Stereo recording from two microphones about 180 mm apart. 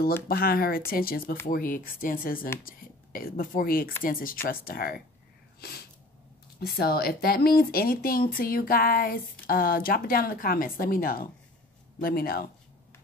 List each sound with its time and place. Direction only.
0.3 s speech: 55° left (ahead or behind)
6.6 s speech: 60° left (ahead or behind)